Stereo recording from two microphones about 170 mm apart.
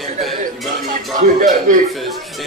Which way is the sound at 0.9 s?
50° right (ahead or behind).